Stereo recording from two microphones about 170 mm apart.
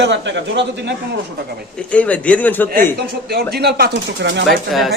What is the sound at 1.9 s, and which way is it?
Speech, 10° left (ahead or behind).